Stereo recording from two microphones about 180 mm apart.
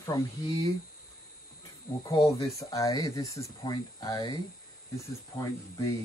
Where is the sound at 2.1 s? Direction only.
20° left (ahead or behind).